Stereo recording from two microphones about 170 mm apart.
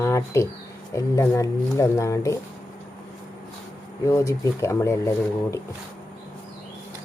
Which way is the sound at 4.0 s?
20° left (ahead or behind).